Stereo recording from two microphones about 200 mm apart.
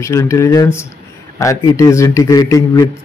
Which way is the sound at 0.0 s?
15° left (ahead or behind).